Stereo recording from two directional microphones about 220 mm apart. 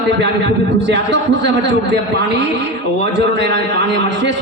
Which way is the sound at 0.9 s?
55° right (ahead or behind).